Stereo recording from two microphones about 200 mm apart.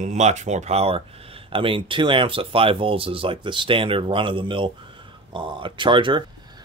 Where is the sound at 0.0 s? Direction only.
35° right (ahead or behind).